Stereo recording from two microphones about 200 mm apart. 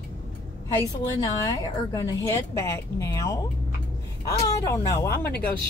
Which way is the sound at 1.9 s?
15° left (ahead or behind).